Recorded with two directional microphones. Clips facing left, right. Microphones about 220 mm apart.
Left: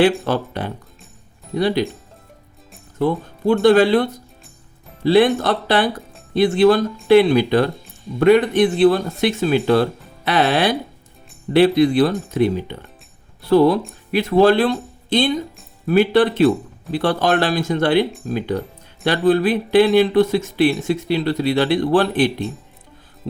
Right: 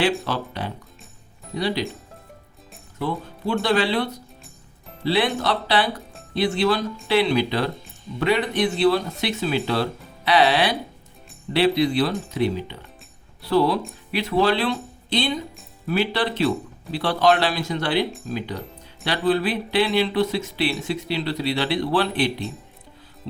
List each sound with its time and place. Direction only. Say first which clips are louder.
0.3 s speech: left 6 dB; 50° left (ahead or behind)
3.0 s speech: left 8 dB; 50° left (ahead or behind)